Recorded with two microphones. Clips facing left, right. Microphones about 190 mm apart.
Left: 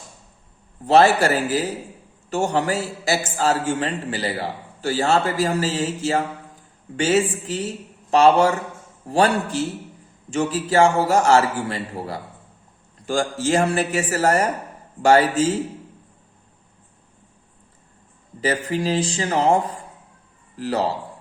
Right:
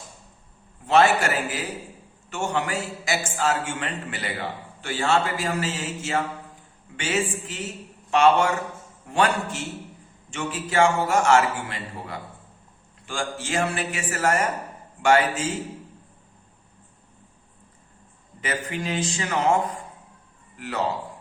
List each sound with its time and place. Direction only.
0.9 s a man's voice: 35° left (ahead or behind)
18.3 s a man's voice: 35° left (ahead or behind)